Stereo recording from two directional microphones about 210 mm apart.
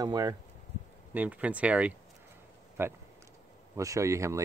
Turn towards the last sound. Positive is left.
turn(degrees=-15)  # may be behind; listen again after turning